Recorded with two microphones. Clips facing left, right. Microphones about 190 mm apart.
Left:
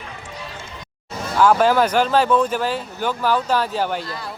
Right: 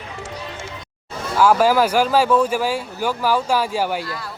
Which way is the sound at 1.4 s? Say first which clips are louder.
Even; 5° right (ahead or behind).